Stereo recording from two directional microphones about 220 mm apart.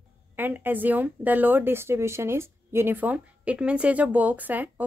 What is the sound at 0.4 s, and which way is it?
Speech, 10° right (ahead or behind).